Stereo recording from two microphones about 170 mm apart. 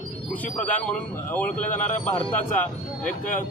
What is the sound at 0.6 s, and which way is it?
Speech, 10° left (ahead or behind).